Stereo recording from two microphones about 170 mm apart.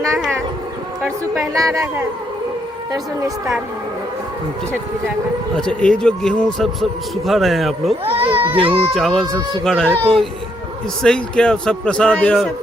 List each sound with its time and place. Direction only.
0.0 s speech: centre (ahead or behind)
1.7 s a man's voice: 15° right (ahead or behind)
5.5 s a man's voice: 5° left (ahead or behind)
8.0 s speech: 35° right (ahead or behind)
9.0 s a man's voice: centre (ahead or behind)
9.2 s a woman's voice: 25° right (ahead or behind)
9.6 s a man's voice: 5° left (ahead or behind)